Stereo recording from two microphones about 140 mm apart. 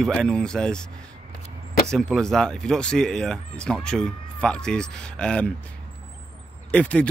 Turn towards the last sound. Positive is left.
turn(degrees=10)  # may be behind; listen again after turning